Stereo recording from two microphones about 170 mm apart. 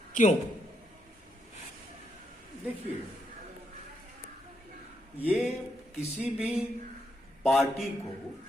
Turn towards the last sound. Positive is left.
turn(degrees=0)  # may be behind; listen again after turning